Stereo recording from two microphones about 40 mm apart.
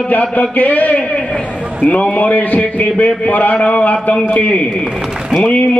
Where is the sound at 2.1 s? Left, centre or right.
Left.